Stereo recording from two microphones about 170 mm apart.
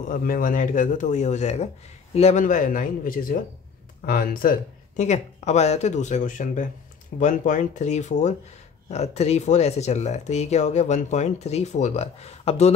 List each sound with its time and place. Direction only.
0.0 s speech: 50° left (ahead or behind)